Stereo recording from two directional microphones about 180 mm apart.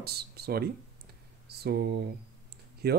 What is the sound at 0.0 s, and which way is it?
Speech, 60° right (ahead or behind).